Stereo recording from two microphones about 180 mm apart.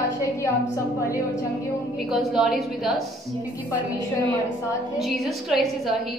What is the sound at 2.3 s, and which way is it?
Speech, centre (ahead or behind).